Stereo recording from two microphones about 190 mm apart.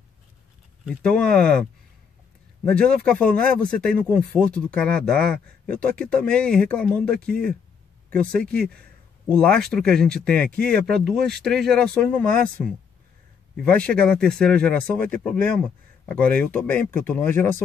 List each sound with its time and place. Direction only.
0.8 s speech: 5° left (ahead or behind)
2.6 s speech: 5° left (ahead or behind)